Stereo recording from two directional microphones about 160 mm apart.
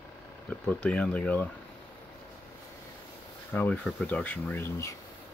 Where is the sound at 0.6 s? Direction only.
5° left (ahead or behind).